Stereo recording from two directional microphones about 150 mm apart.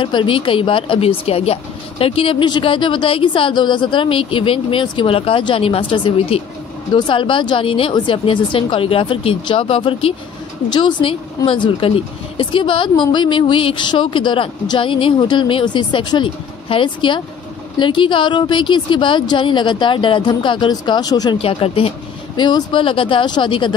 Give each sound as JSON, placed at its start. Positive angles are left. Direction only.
{"t": 0.0, "sound": "a woman's voice", "side_deg": 35}
{"t": 21.4, "sound": "a woman's voice", "side_deg": 40}